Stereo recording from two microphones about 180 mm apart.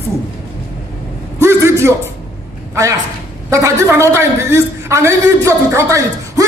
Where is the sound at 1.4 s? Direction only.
15° right (ahead or behind).